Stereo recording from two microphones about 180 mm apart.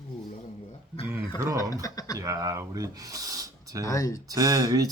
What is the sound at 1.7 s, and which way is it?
Speech, 20° left (ahead or behind).